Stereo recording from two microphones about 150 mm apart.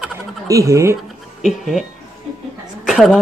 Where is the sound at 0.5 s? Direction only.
20° right (ahead or behind).